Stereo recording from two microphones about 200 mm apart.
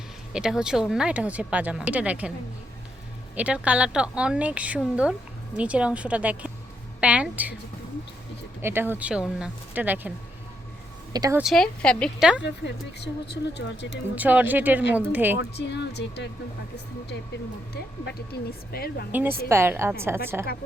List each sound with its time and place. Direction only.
0.3 s speech: 5° right (ahead or behind)
3.3 s a woman's voice: 5° right (ahead or behind)
7.0 s a sound: 5° right (ahead or behind)
8.6 s a woman's voice: 10° right (ahead or behind)
11.1 s speech: 20° right (ahead or behind)
11.3 s speech: centre (ahead or behind)
12.4 s speech: 60° left (ahead or behind)
14.2 s a woman's voice: 10° right (ahead or behind)
15.4 s speech: 60° left (ahead or behind)
18.0 s speech: 55° left (ahead or behind)
19.1 s a woman's voice: 10° right (ahead or behind)